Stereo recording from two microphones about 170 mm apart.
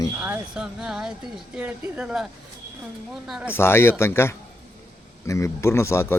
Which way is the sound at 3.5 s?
15° left (ahead or behind).